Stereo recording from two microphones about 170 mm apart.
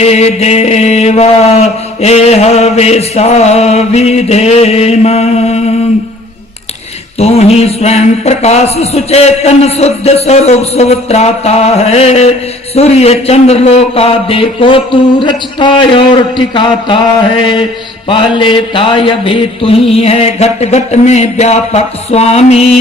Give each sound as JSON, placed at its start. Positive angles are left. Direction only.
{"t": 0.0, "sound": "mantra", "side_deg": 40}
{"t": 7.2, "sound": "mantra", "side_deg": 40}
{"t": 18.1, "sound": "mantra", "side_deg": 30}